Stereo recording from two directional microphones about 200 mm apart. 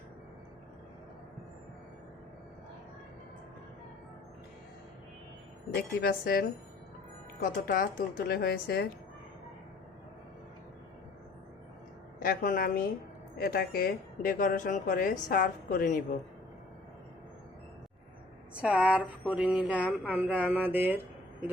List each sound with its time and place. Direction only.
5.7 s speech: 50° left (ahead or behind)
12.2 s speech: 45° left (ahead or behind)
18.5 s speech: 5° right (ahead or behind)